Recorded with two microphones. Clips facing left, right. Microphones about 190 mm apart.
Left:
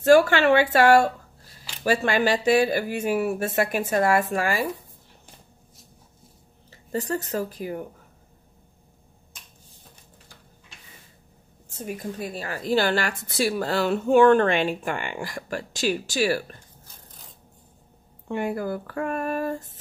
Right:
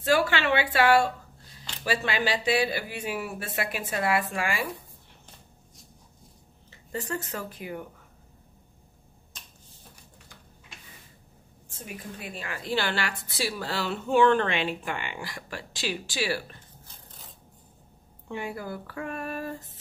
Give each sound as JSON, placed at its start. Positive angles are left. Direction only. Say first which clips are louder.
{"t": 0.0, "sound": "a woman's voice", "louder": "left 8 dB", "side_deg": 45}
{"t": 6.7, "sound": "speech", "louder": "left 6 dB", "side_deg": 40}
{"t": 11.7, "sound": "a woman's voice", "louder": "left 8 dB", "side_deg": 40}
{"t": 18.3, "sound": "a woman's voice", "louder": "left 7 dB", "side_deg": 50}